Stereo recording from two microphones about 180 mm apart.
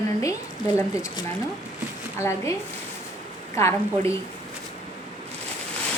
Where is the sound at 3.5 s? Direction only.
15° left (ahead or behind).